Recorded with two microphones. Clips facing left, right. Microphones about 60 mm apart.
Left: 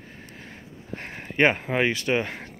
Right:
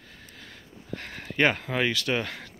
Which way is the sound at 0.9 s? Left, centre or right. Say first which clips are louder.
Left 1 dB; left.